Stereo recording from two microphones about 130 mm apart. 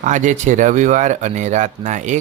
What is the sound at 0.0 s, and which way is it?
Speech, 70° right (ahead or behind).